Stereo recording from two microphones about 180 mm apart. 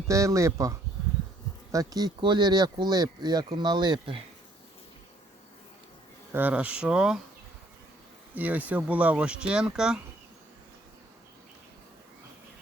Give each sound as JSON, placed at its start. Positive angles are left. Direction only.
{"t": 0.1, "sound": "speech", "side_deg": -15}
{"t": 6.3, "sound": "speech", "side_deg": -10}
{"t": 8.4, "sound": "speech", "side_deg": -10}